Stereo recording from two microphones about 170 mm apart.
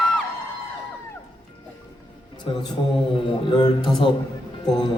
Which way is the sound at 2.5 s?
30° left (ahead or behind).